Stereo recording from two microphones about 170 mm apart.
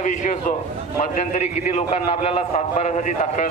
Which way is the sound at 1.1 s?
45° left (ahead or behind).